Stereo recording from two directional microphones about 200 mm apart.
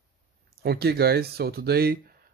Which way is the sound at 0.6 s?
50° right (ahead or behind).